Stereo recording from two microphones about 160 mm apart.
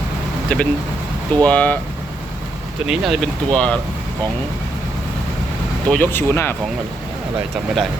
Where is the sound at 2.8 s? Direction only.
5° right (ahead or behind).